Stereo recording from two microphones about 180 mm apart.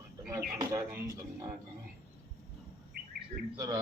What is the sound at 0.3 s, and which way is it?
Speech, 20° right (ahead or behind).